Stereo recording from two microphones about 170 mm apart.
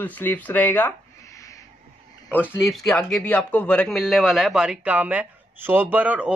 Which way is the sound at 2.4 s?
Centre (ahead or behind).